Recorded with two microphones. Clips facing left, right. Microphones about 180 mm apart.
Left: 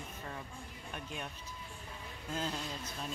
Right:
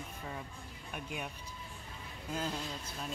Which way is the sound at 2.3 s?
5° right (ahead or behind).